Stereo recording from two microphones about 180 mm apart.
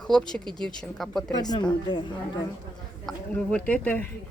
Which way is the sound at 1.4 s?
20° left (ahead or behind).